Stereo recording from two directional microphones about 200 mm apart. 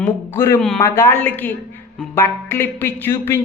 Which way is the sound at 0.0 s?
10° left (ahead or behind).